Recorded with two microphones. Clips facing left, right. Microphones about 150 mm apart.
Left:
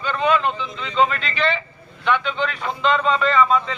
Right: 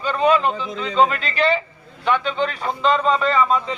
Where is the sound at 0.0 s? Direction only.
40° right (ahead or behind).